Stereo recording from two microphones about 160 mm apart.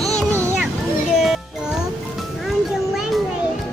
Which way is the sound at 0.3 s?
15° right (ahead or behind).